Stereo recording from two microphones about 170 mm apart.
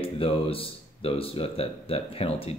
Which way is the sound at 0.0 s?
35° left (ahead or behind).